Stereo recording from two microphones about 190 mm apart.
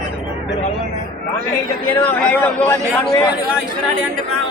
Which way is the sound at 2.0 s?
10° left (ahead or behind).